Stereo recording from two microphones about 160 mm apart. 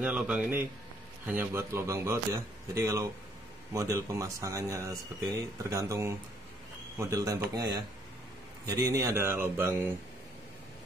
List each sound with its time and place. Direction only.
0.0 s speech: 5° right (ahead or behind)